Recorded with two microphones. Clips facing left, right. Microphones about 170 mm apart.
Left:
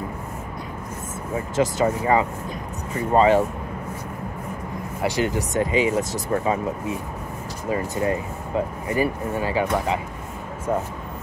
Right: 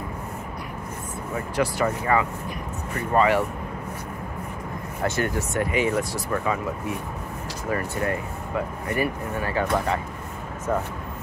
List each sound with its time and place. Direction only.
1.5 s speech: 20° left (ahead or behind)
5.0 s speech: 15° left (ahead or behind)
7.7 s speech: 20° left (ahead or behind)